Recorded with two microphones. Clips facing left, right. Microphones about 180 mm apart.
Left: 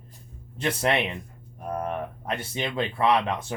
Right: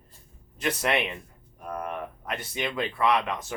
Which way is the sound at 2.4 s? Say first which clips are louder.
Left 1 dB; 30° left (ahead or behind).